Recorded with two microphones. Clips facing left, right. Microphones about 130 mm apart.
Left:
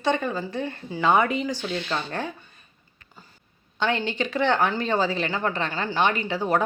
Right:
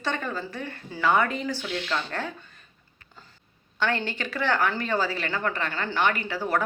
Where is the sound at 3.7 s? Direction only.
20° left (ahead or behind).